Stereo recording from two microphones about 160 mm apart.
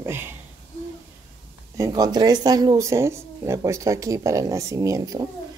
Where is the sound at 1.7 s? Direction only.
20° right (ahead or behind).